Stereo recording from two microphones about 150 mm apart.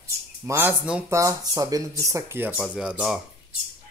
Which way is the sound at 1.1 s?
20° right (ahead or behind).